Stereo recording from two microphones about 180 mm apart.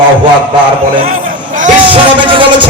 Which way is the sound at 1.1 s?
45° right (ahead or behind).